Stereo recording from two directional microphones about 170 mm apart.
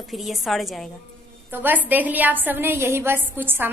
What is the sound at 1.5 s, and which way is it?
A woman's voice, 10° right (ahead or behind).